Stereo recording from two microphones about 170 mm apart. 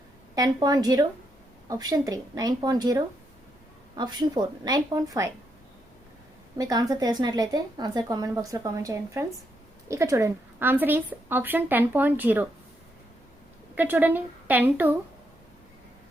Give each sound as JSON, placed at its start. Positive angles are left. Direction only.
{"t": 0.3, "sound": "a woman's voice", "side_deg": -20}
{"t": 6.6, "sound": "a woman's voice", "side_deg": -20}
{"t": 13.7, "sound": "a woman's voice", "side_deg": -10}